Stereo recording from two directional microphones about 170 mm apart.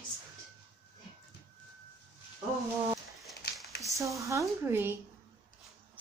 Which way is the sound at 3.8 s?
20° right (ahead or behind).